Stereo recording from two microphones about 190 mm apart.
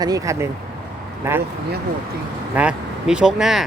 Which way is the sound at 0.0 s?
20° right (ahead or behind).